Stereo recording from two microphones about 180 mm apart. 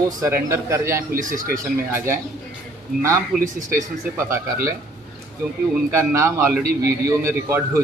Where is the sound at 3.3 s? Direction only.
5° right (ahead or behind).